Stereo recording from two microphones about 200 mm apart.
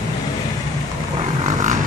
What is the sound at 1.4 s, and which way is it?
Vehicle, 40° right (ahead or behind).